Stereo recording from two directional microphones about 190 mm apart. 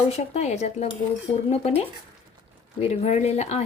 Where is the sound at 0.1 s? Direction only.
35° left (ahead or behind).